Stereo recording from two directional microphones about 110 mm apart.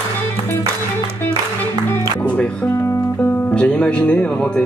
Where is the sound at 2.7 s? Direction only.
25° left (ahead or behind).